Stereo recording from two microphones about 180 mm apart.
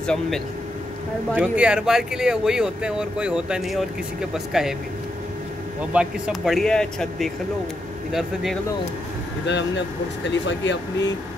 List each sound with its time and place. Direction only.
0.0 s speech: 5° left (ahead or behind)
1.3 s speech: 5° right (ahead or behind)
5.8 s speech: 5° right (ahead or behind)
9.5 s speech: 80° left